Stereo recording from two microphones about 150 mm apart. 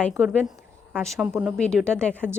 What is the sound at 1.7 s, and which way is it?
Speech, 5° left (ahead or behind).